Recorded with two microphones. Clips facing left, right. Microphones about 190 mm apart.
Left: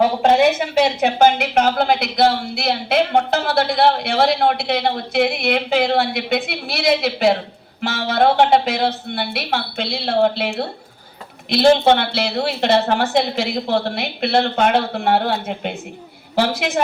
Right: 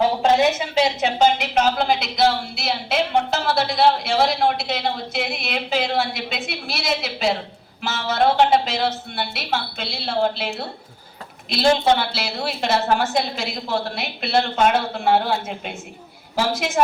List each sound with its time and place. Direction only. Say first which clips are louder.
0.2 s speech: left 3 dB; 60° left (ahead or behind)